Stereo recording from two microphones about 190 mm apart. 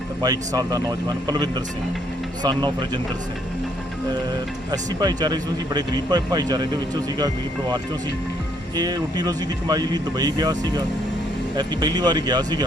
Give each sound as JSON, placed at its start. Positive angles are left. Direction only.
{"t": 0.2, "sound": "speech", "side_deg": -20}
{"t": 4.7, "sound": "speech", "side_deg": -20}
{"t": 8.7, "sound": "speech", "side_deg": -20}